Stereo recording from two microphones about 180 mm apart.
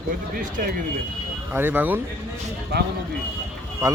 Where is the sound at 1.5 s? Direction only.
10° right (ahead or behind).